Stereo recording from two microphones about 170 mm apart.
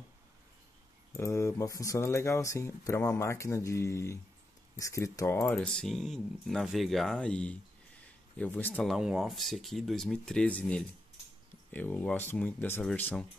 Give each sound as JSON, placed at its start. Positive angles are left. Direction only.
{"t": 1.1, "sound": "speech", "side_deg": 15}
{"t": 8.9, "sound": "speech", "side_deg": 0}